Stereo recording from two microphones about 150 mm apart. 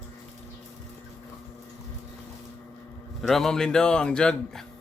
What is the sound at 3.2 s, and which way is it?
Speech, centre (ahead or behind).